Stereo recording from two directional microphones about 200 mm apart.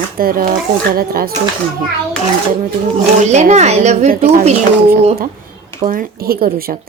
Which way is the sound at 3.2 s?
35° right (ahead or behind).